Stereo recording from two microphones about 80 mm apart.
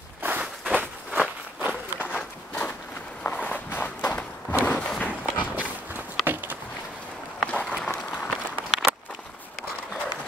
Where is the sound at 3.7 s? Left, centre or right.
Left.